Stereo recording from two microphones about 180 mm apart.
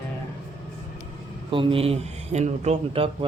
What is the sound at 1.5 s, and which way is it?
A man's voice, 30° right (ahead or behind).